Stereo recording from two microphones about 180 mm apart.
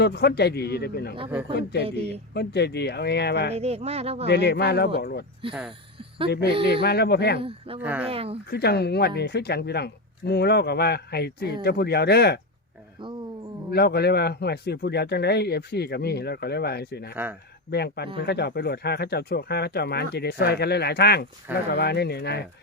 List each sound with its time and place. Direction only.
0.0 s a man's voice: 65° left (ahead or behind)
2.3 s a man's voice: 65° left (ahead or behind)
3.5 s speech: 35° right (ahead or behind)
4.3 s a man's voice: 70° left (ahead or behind)
5.4 s speech: 30° right (ahead or behind)
6.8 s a man's voice: 65° left (ahead or behind)
7.8 s speech: 10° right (ahead or behind)
8.0 s speech: 30° right (ahead or behind)
8.4 s a man's voice: 65° left (ahead or behind)
13.7 s a man's voice: 60° left (ahead or behind)